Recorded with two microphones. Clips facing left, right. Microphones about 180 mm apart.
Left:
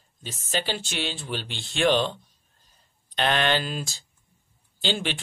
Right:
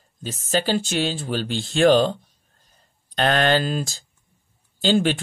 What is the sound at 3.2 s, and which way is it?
Speech, 40° right (ahead or behind).